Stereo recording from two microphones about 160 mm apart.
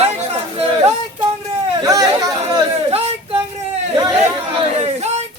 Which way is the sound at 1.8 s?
25° right (ahead or behind).